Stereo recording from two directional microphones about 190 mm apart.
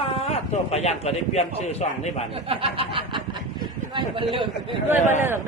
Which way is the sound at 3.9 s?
25° right (ahead or behind).